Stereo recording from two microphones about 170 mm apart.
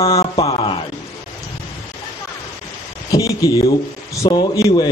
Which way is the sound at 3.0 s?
20° left (ahead or behind).